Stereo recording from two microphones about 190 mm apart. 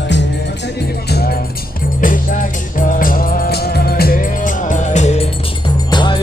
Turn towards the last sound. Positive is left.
turn(degrees=25)  # may be behind; listen again after turning